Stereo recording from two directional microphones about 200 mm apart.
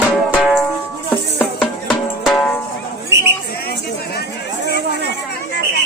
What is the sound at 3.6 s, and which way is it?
Speech, 50° left (ahead or behind).